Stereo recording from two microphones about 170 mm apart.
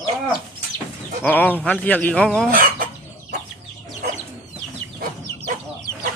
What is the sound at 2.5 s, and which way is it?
Chicken, 55° right (ahead or behind).